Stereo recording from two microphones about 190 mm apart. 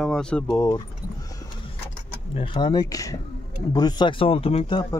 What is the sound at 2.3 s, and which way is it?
Speech, 25° left (ahead or behind).